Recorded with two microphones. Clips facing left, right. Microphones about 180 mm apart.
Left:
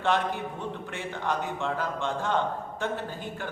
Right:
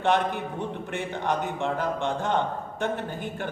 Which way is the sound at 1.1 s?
20° right (ahead or behind).